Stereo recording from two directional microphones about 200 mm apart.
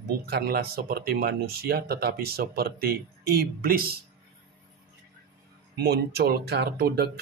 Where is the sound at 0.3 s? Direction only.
50° right (ahead or behind).